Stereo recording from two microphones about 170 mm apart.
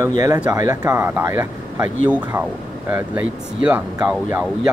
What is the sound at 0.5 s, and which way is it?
Speech, 20° right (ahead or behind).